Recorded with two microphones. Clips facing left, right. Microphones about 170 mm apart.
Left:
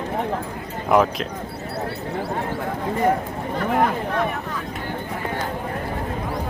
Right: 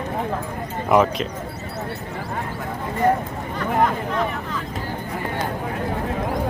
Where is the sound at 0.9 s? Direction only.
Centre (ahead or behind).